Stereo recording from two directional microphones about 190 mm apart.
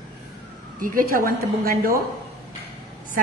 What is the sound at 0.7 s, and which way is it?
A woman's voice, 45° right (ahead or behind).